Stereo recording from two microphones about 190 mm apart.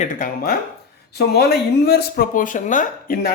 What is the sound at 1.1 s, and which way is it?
Speech, 60° left (ahead or behind).